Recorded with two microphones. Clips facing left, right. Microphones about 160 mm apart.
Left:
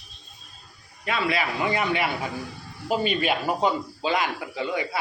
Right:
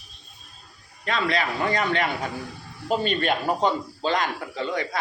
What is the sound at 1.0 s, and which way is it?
A man's voice, 5° left (ahead or behind).